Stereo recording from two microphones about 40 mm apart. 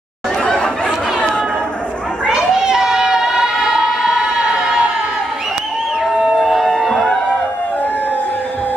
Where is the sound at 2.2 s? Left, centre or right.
Centre.